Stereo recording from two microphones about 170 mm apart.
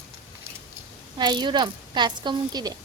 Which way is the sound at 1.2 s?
25° right (ahead or behind).